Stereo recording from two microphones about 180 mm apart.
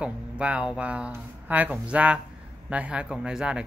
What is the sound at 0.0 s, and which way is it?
Speech, 5° right (ahead or behind).